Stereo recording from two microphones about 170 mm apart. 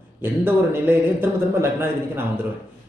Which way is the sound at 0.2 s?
15° right (ahead or behind).